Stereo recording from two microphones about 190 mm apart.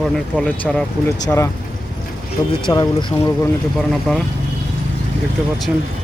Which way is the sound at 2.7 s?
25° left (ahead or behind).